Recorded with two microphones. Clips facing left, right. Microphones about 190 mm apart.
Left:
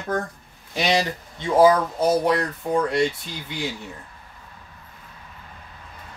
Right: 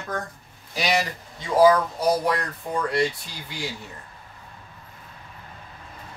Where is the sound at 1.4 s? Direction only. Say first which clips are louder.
Left 1 dB; 25° left (ahead or behind).